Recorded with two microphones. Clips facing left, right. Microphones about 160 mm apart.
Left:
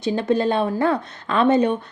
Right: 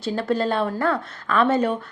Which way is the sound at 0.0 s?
20° left (ahead or behind).